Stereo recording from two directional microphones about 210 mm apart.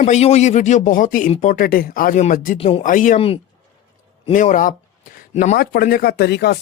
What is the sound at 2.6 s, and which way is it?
Speech, 25° left (ahead or behind).